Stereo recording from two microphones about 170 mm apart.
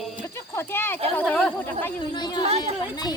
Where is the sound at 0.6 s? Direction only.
15° left (ahead or behind).